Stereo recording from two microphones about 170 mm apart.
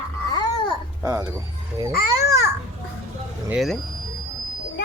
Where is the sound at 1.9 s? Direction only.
65° left (ahead or behind).